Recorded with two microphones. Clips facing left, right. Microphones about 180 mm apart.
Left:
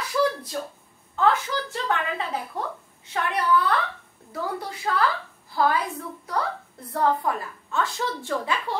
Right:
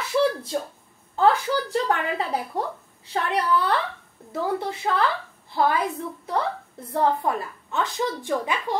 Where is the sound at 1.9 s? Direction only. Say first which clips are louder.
Right 2 dB; 35° right (ahead or behind).